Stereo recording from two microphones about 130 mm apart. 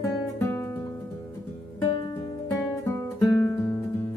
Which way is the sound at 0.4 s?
15° left (ahead or behind).